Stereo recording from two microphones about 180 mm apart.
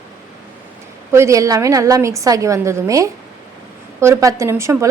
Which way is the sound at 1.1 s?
15° right (ahead or behind).